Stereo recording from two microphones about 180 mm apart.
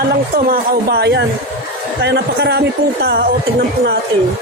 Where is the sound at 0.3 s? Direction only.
55° right (ahead or behind).